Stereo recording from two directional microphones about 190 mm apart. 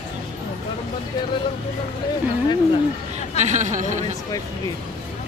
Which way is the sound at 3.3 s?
40° right (ahead or behind).